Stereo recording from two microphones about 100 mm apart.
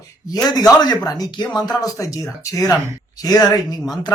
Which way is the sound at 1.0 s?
40° left (ahead or behind).